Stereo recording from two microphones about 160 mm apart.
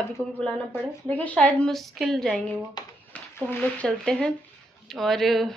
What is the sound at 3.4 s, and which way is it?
A woman's voice, 10° left (ahead or behind).